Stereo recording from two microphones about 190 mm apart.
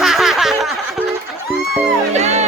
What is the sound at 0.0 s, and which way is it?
Snicker, centre (ahead or behind).